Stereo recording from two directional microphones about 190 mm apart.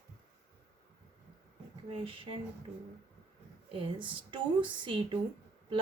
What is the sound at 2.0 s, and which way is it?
Speech, 30° right (ahead or behind).